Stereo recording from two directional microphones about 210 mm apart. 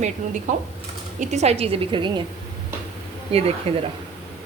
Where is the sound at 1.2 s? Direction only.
35° right (ahead or behind).